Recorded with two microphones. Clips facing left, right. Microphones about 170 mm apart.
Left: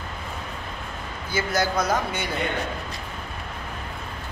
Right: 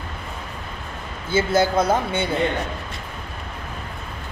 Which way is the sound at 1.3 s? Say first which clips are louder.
Right 6 dB; 25° right (ahead or behind).